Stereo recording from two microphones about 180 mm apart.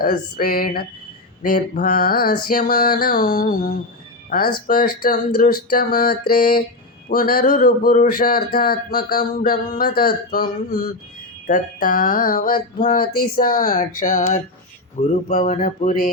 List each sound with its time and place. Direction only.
0.0 s speech: 55° left (ahead or behind)